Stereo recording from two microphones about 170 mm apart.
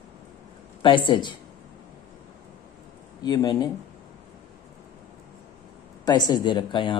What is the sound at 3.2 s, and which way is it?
Speech, 25° left (ahead or behind).